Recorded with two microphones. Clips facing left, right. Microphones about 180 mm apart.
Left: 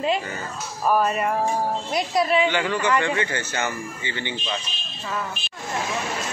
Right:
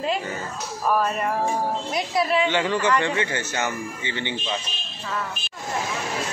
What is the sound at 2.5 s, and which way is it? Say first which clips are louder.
A man's voice: right 1 dB; 25° right (ahead or behind).